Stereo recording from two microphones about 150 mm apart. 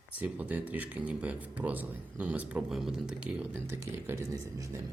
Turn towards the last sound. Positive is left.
turn(degrees=-20)  # may be behind; listen again after turning